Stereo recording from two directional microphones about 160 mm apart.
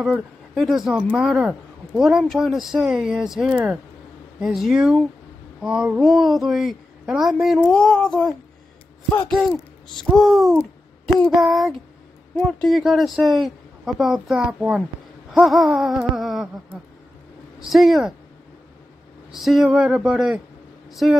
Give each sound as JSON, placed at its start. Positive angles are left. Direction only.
{"t": 0.0, "sound": "a woman's voice", "side_deg": 0}
{"t": 17.6, "sound": "a woman's voice", "side_deg": 0}
{"t": 19.3, "sound": "a woman's voice", "side_deg": 0}